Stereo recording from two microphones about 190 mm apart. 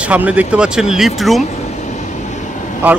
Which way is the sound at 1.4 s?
40° left (ahead or behind).